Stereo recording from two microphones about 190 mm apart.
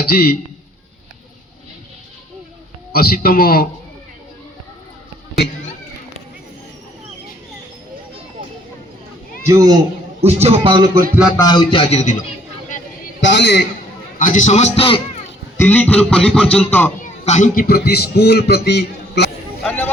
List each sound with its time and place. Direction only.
0.0 s a man's voice: 55° left (ahead or behind)
2.9 s speech: 50° left (ahead or behind)
9.5 s speech: 15° right (ahead or behind)
10.2 s a man's voice: 35° right (ahead or behind)
11.3 s a man's voice: 20° left (ahead or behind); by 12.2 s 40° left (ahead or behind)
13.2 s a man's voice: 65° left (ahead or behind)
14.2 s a man's voice: 45° left (ahead or behind)
15.5 s a sound: 10° left (ahead or behind)
16.3 s music: 5° left (ahead or behind)
16.6 s a sound: 10° left (ahead or behind)
17.0 s a man's voice: 40° left (ahead or behind); by 19.3 s 60° left (ahead or behind)
19.6 s a sound: 10° left (ahead or behind)